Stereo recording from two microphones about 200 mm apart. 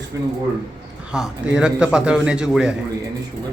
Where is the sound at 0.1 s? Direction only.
15° right (ahead or behind).